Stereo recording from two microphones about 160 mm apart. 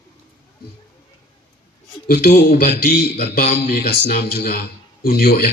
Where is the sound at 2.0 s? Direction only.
70° left (ahead or behind).